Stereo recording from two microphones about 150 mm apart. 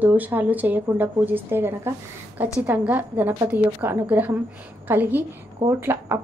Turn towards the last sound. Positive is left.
turn(degrees=-15)  # may be behind; listen again after turning